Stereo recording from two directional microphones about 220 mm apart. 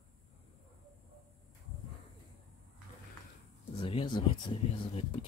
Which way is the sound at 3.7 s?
25° left (ahead or behind).